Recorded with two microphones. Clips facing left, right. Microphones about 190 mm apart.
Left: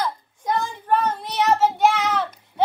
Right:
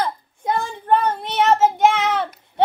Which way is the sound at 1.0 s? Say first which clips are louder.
Right 3 dB; 55° right (ahead or behind).